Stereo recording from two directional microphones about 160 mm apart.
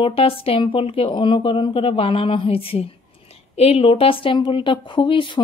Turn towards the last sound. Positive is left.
turn(degrees=30)  # may be behind; listen again after turning